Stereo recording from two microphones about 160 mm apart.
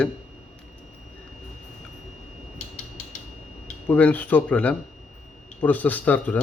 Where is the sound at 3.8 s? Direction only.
10° left (ahead or behind).